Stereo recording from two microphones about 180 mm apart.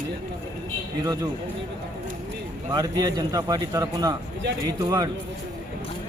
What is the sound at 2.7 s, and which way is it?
A man's voice, 25° right (ahead or behind).